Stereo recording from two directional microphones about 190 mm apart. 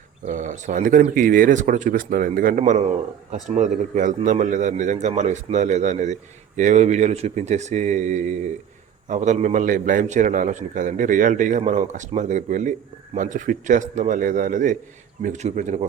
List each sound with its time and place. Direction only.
0.3 s a man's voice: 40° right (ahead or behind)